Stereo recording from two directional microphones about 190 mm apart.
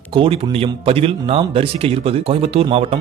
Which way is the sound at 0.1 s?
30° right (ahead or behind).